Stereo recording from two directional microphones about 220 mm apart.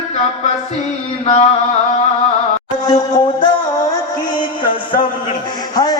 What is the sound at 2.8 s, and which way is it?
Music, 15° left (ahead or behind).